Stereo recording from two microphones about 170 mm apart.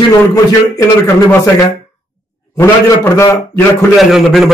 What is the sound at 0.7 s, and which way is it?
Speech, 15° left (ahead or behind).